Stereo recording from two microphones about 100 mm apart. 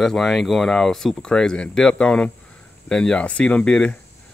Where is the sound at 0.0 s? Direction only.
5° left (ahead or behind).